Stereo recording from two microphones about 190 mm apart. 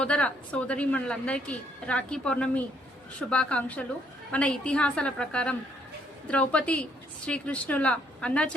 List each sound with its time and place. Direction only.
0.0 s a woman's voice: 5° left (ahead or behind)